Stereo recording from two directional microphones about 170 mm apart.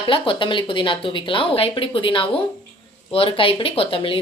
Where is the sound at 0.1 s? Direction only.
30° left (ahead or behind).